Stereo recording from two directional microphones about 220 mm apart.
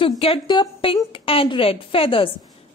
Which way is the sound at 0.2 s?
20° left (ahead or behind).